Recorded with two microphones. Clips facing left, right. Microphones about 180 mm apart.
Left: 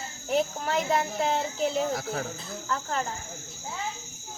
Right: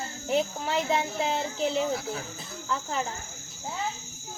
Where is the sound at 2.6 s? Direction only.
5° right (ahead or behind).